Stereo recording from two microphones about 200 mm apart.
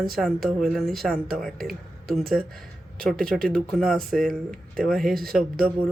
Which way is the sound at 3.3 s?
Centre (ahead or behind).